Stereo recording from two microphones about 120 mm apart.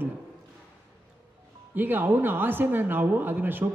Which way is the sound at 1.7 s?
15° right (ahead or behind).